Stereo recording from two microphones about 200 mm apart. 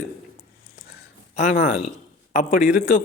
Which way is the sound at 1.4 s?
40° left (ahead or behind).